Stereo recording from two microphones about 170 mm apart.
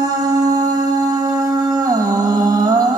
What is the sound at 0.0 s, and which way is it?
Music, 20° right (ahead or behind).